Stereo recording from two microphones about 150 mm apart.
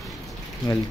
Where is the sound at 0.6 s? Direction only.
25° left (ahead or behind).